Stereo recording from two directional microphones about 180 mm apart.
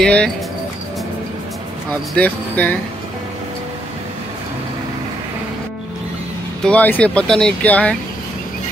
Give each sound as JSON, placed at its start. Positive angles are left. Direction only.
{"t": 0.0, "sound": "speech", "side_deg": 5}
{"t": 1.9, "sound": "speech", "side_deg": 10}
{"t": 6.6, "sound": "speech", "side_deg": 10}